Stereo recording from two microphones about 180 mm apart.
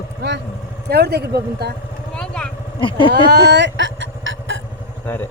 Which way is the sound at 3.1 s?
70° right (ahead or behind).